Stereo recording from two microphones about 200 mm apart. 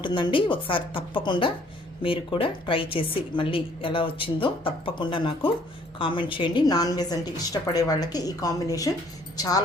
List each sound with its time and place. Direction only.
0.0 s a woman's voice: 25° left (ahead or behind)